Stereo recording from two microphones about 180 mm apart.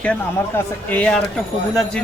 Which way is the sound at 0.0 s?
10° left (ahead or behind).